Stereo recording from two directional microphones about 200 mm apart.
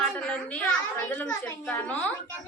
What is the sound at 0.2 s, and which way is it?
A woman's voice, 5° left (ahead or behind).